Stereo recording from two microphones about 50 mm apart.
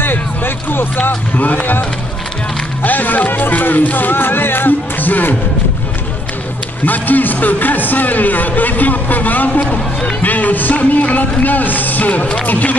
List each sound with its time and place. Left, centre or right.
0.7 s speech: left
6.8 s speech: left
10.3 s speech: left